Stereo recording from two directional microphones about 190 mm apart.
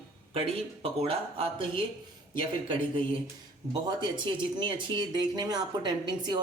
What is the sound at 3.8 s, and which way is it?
Speech, 25° right (ahead or behind).